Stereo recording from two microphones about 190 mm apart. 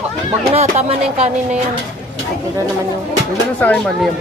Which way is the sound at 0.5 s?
35° right (ahead or behind).